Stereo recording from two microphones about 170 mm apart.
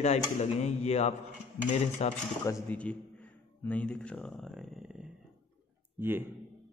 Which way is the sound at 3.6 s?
5° left (ahead or behind).